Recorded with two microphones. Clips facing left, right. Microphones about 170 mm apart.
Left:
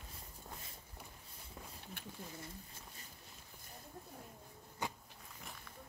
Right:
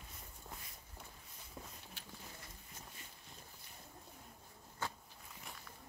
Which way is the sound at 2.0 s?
55° left (ahead or behind).